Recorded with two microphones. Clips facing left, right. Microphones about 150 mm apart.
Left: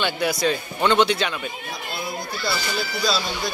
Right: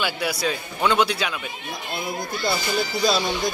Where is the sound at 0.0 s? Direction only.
5° right (ahead or behind).